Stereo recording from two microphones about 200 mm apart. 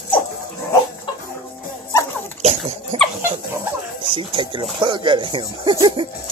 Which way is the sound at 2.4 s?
35° right (ahead or behind).